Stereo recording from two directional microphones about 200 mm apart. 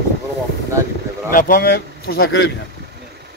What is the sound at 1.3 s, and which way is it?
Speech, 45° left (ahead or behind).